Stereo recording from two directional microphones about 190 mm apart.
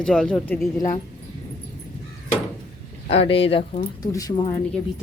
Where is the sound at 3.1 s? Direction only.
30° left (ahead or behind).